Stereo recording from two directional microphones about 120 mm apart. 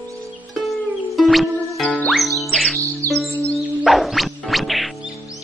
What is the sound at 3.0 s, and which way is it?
Music, 25° right (ahead or behind).